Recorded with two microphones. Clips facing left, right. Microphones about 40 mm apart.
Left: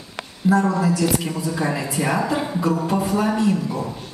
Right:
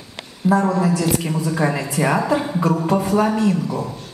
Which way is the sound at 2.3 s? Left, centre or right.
Centre.